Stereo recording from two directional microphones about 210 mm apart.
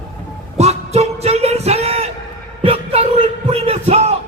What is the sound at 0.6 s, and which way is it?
Music, 30° right (ahead or behind).